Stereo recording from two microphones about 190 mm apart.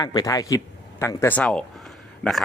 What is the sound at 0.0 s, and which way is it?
Speech, 20° left (ahead or behind).